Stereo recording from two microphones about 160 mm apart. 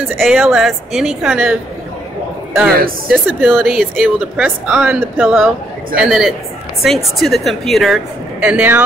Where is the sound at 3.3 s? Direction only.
10° right (ahead or behind).